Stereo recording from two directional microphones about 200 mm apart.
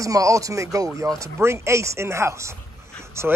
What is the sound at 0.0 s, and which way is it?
Speech, 15° right (ahead or behind).